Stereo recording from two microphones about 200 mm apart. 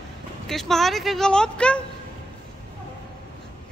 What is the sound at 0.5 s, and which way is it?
Speech, centre (ahead or behind).